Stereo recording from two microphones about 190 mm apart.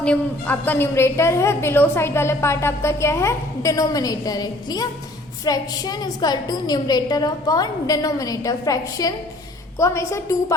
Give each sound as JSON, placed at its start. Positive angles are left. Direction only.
{"t": 0.0, "sound": "a woman's voice", "side_deg": 5}